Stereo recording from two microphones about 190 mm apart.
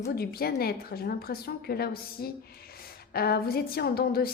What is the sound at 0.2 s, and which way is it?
A woman's voice, 55° left (ahead or behind).